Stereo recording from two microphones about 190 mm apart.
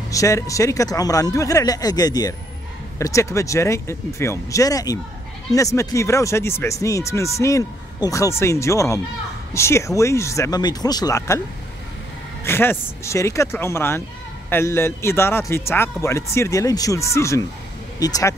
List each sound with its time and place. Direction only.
0.1 s speech: 15° left (ahead or behind)
12.4 s speech: 10° left (ahead or behind)